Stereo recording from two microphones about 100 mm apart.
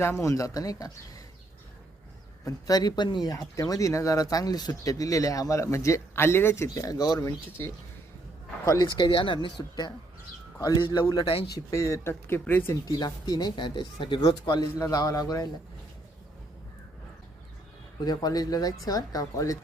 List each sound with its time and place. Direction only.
0.0 s speech: 30° left (ahead or behind)
2.4 s speech: 40° left (ahead or behind)
7.6 s speech: 25° left (ahead or behind)
8.6 s speech: 35° left (ahead or behind)
9.0 s speech: 55° left (ahead or behind)
10.6 s speech: 40° left (ahead or behind)
11.5 s speech: 30° left (ahead or behind)
13.0 s speech: 45° left (ahead or behind)
14.2 s speech: 45° left (ahead or behind)
18.0 s speech: 40° left (ahead or behind)